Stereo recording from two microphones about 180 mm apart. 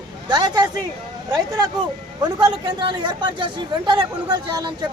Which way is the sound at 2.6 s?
25° right (ahead or behind).